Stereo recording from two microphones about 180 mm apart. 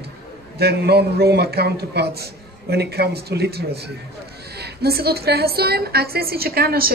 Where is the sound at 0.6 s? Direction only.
65° right (ahead or behind).